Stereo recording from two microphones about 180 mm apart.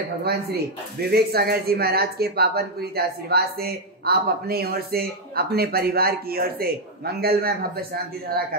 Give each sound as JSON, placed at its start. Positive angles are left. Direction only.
{"t": 0.2, "sound": "speech", "side_deg": -60}